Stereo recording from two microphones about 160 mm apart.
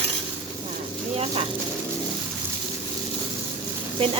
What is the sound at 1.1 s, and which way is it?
Speech, 40° right (ahead or behind).